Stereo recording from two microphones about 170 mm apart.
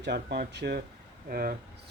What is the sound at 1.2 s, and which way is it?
Speech, 60° right (ahead or behind).